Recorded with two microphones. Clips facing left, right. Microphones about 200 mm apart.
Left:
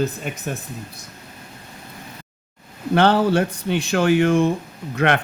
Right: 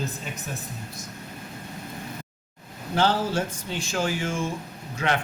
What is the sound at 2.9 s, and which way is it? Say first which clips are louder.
Speech: left 7 dB; 65° left (ahead or behind).